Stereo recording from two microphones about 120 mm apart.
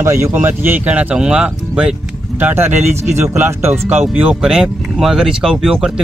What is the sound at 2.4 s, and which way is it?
Speech, 20° right (ahead or behind).